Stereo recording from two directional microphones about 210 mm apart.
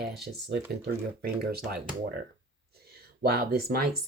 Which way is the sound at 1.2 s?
45° right (ahead or behind).